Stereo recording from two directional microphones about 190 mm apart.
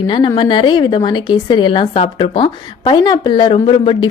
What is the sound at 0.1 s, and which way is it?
A woman's voice, 25° left (ahead or behind).